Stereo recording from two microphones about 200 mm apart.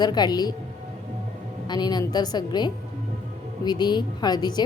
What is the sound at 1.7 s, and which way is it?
A woman's voice, 20° left (ahead or behind).